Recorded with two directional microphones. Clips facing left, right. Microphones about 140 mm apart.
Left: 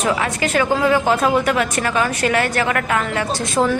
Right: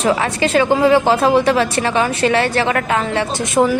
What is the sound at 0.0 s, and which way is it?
A woman's voice, 35° right (ahead or behind).